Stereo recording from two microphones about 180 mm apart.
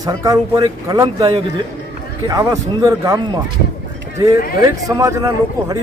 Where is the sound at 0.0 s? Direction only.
20° right (ahead or behind).